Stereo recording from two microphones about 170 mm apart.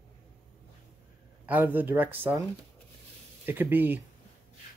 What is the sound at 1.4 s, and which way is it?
Speech, 10° right (ahead or behind).